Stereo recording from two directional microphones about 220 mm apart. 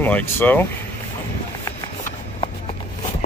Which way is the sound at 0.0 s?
10° left (ahead or behind).